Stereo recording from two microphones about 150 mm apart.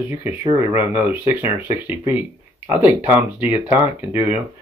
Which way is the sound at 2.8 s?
10° right (ahead or behind).